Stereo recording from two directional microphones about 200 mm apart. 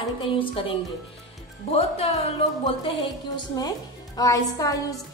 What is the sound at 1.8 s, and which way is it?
A woman's voice, 30° left (ahead or behind).